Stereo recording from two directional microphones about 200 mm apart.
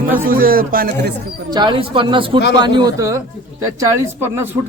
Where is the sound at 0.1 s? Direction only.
45° right (ahead or behind).